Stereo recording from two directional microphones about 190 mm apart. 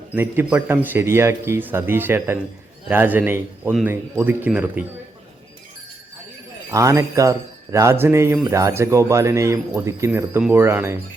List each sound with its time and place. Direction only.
0.1 s speech: 10° right (ahead or behind)
6.7 s speech: 15° right (ahead or behind)